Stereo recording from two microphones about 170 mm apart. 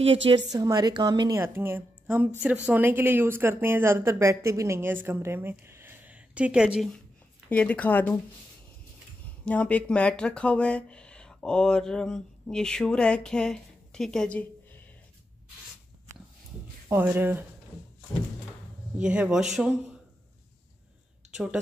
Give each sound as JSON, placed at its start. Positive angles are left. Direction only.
{"t": 0.5, "sound": "a woman's voice", "side_deg": -20}
{"t": 7.4, "sound": "speech", "side_deg": 10}
{"t": 9.4, "sound": "speech", "side_deg": 10}
{"t": 16.9, "sound": "speech", "side_deg": -10}
{"t": 18.9, "sound": "speech", "side_deg": -5}